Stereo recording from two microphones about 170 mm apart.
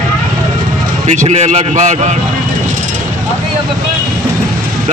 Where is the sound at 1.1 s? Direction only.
45° right (ahead or behind).